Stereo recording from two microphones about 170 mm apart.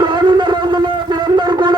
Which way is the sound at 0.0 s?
30° right (ahead or behind).